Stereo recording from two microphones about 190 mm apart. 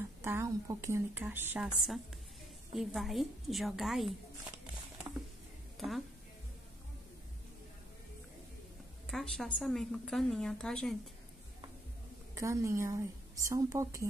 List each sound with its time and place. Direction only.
0.2 s a woman's voice: 15° right (ahead or behind)
5.8 s a woman's voice: centre (ahead or behind)
9.1 s a woman's voice: centre (ahead or behind)
12.4 s a woman's voice: 15° right (ahead or behind)